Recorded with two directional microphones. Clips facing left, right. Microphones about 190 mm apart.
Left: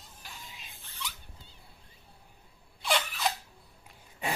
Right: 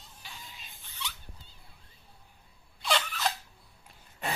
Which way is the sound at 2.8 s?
10° left (ahead or behind).